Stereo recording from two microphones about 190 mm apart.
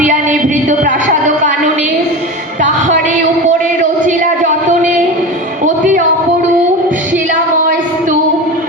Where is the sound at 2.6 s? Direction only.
40° right (ahead or behind).